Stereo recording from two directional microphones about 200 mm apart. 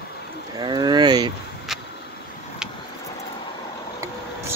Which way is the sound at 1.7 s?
Centre (ahead or behind).